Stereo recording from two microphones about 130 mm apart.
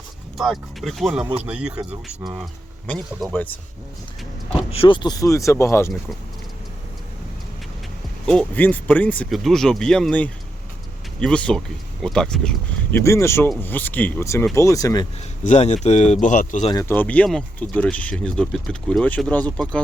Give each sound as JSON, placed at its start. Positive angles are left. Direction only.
{"t": 0.3, "sound": "speech", "side_deg": 0}
{"t": 3.3, "sound": "speech", "side_deg": 15}
{"t": 4.7, "sound": "speech", "side_deg": 45}
{"t": 8.3, "sound": "speech", "side_deg": 10}
{"t": 13.0, "sound": "speech", "side_deg": 20}
{"t": 15.4, "sound": "speech", "side_deg": 60}
{"t": 16.2, "sound": "speech", "side_deg": 80}
{"t": 16.9, "sound": "speech", "side_deg": 10}